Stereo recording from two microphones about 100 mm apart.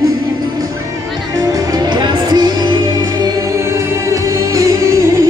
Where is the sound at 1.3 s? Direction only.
35° right (ahead or behind).